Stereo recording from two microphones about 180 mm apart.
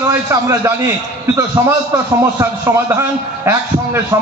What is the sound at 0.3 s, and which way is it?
Speech, 15° right (ahead or behind).